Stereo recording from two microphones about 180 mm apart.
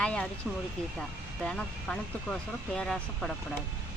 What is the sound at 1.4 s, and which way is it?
Speech, 5° left (ahead or behind).